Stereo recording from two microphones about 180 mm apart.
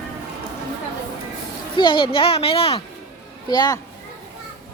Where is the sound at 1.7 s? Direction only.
25° left (ahead or behind).